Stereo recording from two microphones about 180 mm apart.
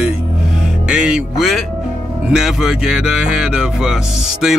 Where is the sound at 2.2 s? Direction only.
5° right (ahead or behind).